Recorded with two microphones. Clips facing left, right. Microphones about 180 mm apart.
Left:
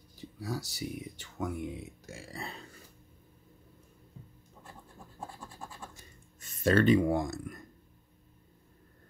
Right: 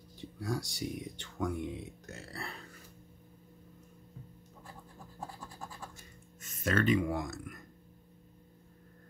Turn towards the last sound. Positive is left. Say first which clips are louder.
# left 5 dB
turn(degrees=30)  # may be behind; listen again after turning